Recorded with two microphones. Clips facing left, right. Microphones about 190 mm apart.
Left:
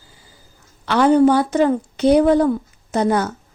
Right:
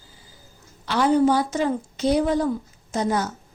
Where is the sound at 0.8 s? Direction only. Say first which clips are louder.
Left 5 dB; 60° left (ahead or behind).